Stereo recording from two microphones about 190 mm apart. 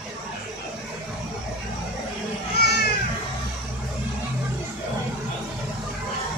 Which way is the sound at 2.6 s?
55° left (ahead or behind).